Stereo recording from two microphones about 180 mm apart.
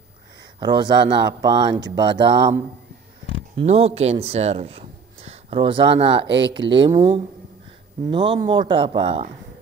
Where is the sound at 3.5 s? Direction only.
35° right (ahead or behind).